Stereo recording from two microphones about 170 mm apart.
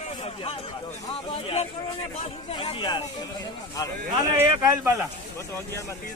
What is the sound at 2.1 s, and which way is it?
Speech, 35° left (ahead or behind).